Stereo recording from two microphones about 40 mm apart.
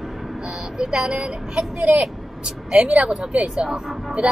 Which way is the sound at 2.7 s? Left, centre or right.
Right.